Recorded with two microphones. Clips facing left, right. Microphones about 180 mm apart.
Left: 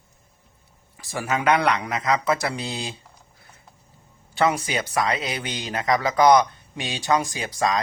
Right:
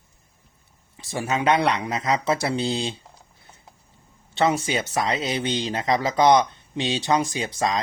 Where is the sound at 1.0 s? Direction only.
25° right (ahead or behind).